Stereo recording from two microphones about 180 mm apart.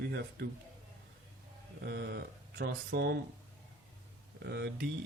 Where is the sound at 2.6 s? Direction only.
65° right (ahead or behind).